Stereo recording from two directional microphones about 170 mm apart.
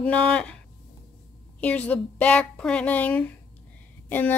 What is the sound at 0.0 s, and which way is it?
Speech, 5° left (ahead or behind).